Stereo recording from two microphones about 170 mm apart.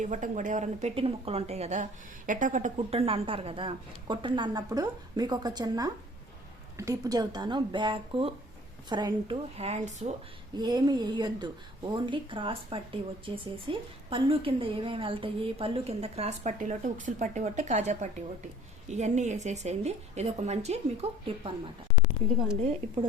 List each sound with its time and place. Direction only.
0.0 s speech: 45° right (ahead or behind)
3.1 s a woman's voice: 35° right (ahead or behind)
10.5 s speech: 25° right (ahead or behind)